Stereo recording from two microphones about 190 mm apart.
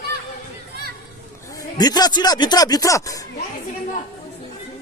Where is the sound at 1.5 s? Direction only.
20° left (ahead or behind).